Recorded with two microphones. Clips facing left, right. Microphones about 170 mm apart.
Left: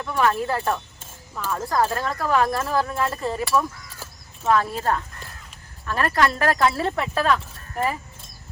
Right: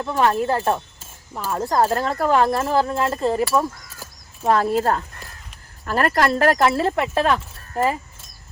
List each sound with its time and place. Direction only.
0.0 s speech: 25° right (ahead or behind)
6.4 s speech: 25° right (ahead or behind)